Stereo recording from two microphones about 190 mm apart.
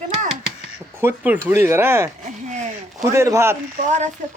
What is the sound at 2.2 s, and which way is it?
Speech, 40° right (ahead or behind).